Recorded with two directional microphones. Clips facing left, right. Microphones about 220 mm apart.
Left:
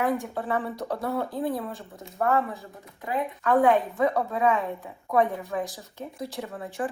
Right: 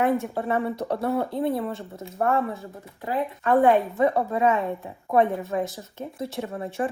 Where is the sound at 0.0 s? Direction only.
25° right (ahead or behind).